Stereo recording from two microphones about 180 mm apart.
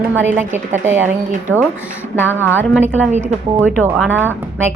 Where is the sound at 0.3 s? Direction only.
10° right (ahead or behind).